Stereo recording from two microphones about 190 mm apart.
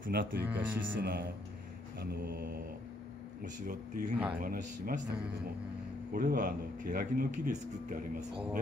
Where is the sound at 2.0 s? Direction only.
55° right (ahead or behind).